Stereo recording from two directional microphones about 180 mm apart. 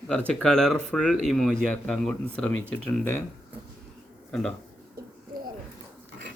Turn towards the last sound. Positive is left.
turn(degrees=-60)  # may be behind; listen again after turning